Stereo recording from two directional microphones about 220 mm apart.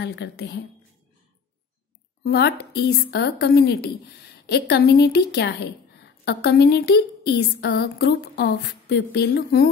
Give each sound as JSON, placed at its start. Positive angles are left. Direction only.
{"t": 0.0, "sound": "a woman's voice", "side_deg": 50}
{"t": 2.2, "sound": "a woman's voice", "side_deg": 50}